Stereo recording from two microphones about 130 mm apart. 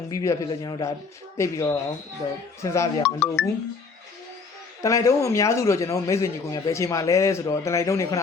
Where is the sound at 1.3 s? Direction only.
25° left (ahead or behind).